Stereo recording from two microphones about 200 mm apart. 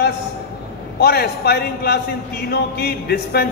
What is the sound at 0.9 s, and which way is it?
Speech, 50° left (ahead or behind).